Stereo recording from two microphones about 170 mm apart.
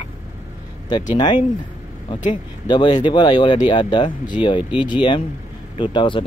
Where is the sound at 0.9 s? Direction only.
25° left (ahead or behind).